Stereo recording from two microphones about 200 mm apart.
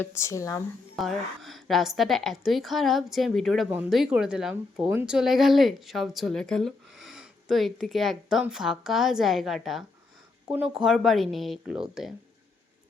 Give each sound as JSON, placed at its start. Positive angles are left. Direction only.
{"t": 0.0, "sound": "speech", "side_deg": 15}
{"t": 0.9, "sound": "a woman's voice", "side_deg": 0}